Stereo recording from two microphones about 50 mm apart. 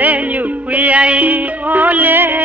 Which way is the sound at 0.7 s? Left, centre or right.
Right.